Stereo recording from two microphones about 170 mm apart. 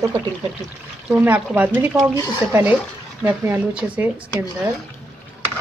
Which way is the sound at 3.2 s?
10° right (ahead or behind).